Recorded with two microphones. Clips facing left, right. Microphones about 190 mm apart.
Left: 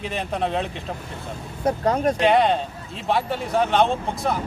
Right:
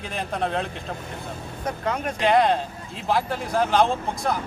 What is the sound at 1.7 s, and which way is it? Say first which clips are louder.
Speech: left 7 dB; 35° left (ahead or behind).